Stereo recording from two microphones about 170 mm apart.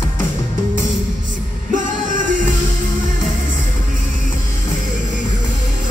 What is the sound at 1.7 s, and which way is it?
Music, 50° right (ahead or behind).